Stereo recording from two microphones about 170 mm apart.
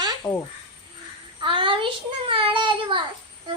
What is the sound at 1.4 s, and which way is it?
Child singing, 30° right (ahead or behind).